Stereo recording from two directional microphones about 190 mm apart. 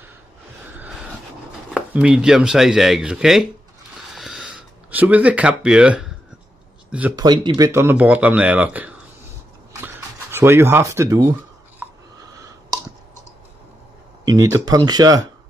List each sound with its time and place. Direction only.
0.7 s vehicle: 5° right (ahead or behind)
1.7 s speech: 5° right (ahead or behind)
4.1 s a sound: centre (ahead or behind)
6.9 s speech: 10° right (ahead or behind)
7.2 s speech: 20° right (ahead or behind)
11.8 s a sound: 15° right (ahead or behind)
12.4 s clicking: 20° right (ahead or behind)
14.2 s speech: 20° right (ahead or behind)